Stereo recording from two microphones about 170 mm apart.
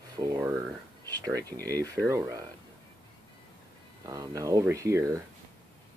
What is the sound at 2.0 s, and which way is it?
Speech, 20° right (ahead or behind).